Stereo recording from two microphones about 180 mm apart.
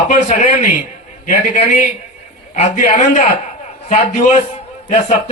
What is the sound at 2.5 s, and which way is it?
A man's voice, 45° left (ahead or behind).